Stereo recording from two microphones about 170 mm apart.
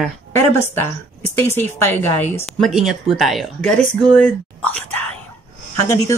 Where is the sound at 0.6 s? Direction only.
15° left (ahead or behind).